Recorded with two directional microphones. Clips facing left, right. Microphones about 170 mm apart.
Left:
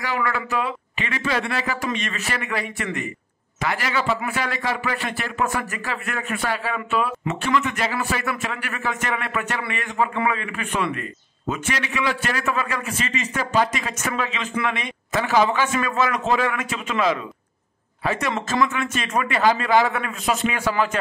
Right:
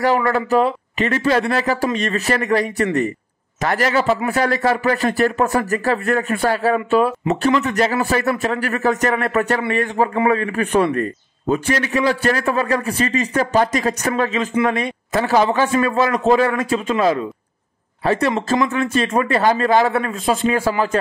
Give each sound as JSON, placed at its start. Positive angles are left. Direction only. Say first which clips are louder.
{"t": 0.0, "sound": "a man's voice", "louder": "right 8 dB", "side_deg": -40}